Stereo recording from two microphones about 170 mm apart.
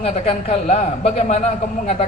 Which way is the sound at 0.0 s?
35° left (ahead or behind).